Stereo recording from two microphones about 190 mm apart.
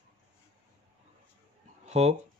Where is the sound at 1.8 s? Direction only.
35° right (ahead or behind).